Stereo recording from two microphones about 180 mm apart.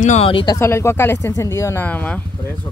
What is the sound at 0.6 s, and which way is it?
Speech, 15° left (ahead or behind).